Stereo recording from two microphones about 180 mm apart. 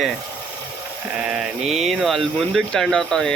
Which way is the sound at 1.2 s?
5° right (ahead or behind).